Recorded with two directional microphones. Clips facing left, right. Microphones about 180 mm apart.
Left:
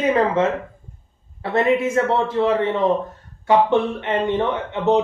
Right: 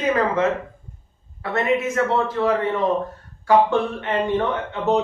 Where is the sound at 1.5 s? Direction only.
30° left (ahead or behind).